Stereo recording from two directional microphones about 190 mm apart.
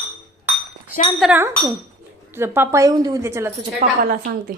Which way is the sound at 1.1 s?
Centre (ahead or behind).